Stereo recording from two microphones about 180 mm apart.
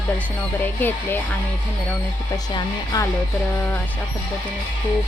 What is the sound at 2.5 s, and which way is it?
Speech, 20° left (ahead or behind).